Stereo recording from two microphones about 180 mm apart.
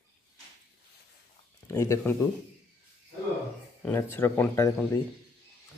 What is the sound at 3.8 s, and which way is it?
Speech, 10° left (ahead or behind).